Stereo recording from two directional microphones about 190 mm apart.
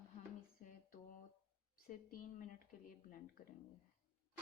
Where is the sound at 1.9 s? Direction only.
45° left (ahead or behind).